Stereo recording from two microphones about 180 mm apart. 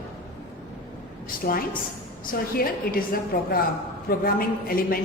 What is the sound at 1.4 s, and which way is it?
A woman's voice, 55° left (ahead or behind).